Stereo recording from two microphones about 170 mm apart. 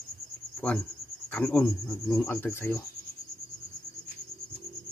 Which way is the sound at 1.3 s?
10° left (ahead or behind).